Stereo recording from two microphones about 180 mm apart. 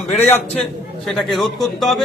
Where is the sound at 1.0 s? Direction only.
Centre (ahead or behind).